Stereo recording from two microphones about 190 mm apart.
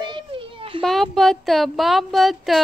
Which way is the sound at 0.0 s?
25° right (ahead or behind).